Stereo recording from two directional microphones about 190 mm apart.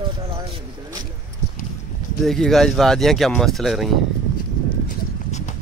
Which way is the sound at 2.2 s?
Centre (ahead or behind).